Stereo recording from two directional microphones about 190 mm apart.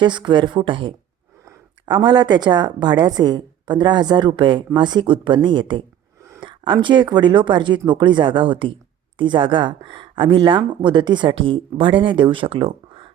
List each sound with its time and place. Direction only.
0.0 s a woman's voice: 25° right (ahead or behind)